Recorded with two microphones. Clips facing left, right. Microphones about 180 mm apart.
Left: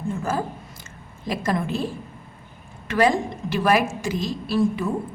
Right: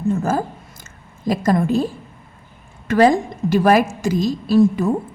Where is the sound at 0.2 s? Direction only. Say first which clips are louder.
Right 5 dB; 45° right (ahead or behind).